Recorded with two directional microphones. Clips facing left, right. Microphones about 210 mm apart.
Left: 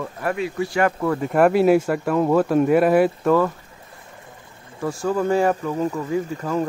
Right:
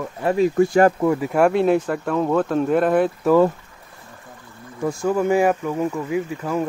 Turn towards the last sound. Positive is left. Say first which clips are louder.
# even
turn(degrees=-10)  # may be behind; listen again after turning